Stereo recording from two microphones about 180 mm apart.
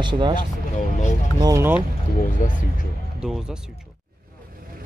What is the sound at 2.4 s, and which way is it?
Speech, 45° left (ahead or behind).